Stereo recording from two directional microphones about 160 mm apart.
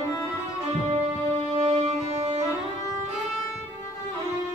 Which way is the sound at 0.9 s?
40° right (ahead or behind).